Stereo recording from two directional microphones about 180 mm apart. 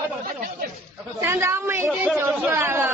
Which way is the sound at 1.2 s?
15° right (ahead or behind).